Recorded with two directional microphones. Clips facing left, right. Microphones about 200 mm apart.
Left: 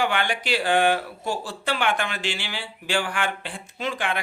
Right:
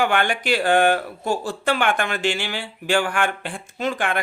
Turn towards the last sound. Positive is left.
turn(degrees=-50)  # may be behind; listen again after turning